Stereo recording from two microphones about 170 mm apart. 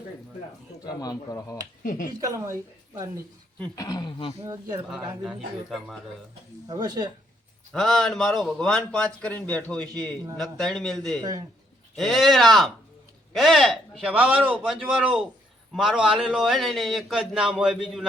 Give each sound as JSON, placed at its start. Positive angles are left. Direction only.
{"t": 1.0, "sound": "speech", "side_deg": 20}
{"t": 1.8, "sound": "speech", "side_deg": 50}
{"t": 2.2, "sound": "speech", "side_deg": -20}
{"t": 3.8, "sound": "speech", "side_deg": 20}
{"t": 5.6, "sound": "a man's voice", "side_deg": 0}
{"t": 6.7, "sound": "speech", "side_deg": -25}
{"t": 7.7, "sound": "a man's voice", "side_deg": 0}
{"t": 11.2, "sound": "speech", "side_deg": -20}
{"t": 11.9, "sound": "a man's voice", "side_deg": 0}